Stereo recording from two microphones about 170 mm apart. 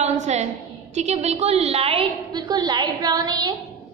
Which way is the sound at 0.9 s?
40° right (ahead or behind).